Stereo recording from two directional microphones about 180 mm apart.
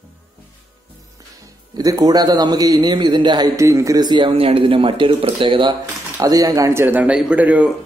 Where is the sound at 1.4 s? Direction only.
20° right (ahead or behind).